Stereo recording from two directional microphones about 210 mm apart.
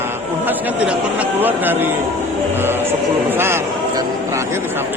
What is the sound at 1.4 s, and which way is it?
Speech, 10° right (ahead or behind).